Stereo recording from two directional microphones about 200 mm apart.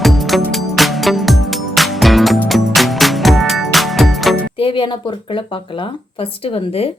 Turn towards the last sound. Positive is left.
turn(degrees=30)  # may be behind; listen again after turning